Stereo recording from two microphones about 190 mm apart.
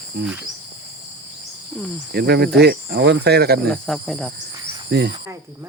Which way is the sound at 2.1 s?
60° right (ahead or behind).